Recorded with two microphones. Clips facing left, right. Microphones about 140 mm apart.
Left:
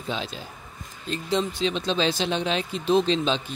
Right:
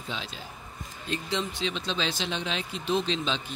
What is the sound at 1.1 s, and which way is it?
Speech, 35° left (ahead or behind).